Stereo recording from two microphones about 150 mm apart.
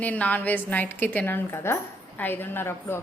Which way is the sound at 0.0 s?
10° left (ahead or behind).